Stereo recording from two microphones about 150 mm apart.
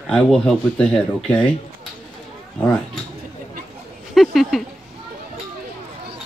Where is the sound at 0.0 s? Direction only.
5° left (ahead or behind).